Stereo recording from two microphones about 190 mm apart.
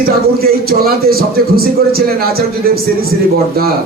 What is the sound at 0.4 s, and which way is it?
A man's voice, 55° right (ahead or behind).